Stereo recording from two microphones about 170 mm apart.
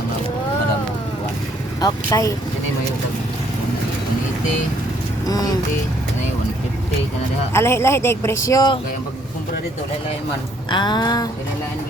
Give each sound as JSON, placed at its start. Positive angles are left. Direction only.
{"t": 1.8, "sound": "music", "side_deg": 20}
{"t": 5.2, "sound": "vehicle", "side_deg": 20}
{"t": 7.5, "sound": "speech", "side_deg": 15}
{"t": 10.7, "sound": "music", "side_deg": 25}